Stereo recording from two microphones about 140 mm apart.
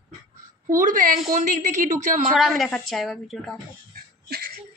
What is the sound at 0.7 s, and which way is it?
A woman's voice, 70° right (ahead or behind).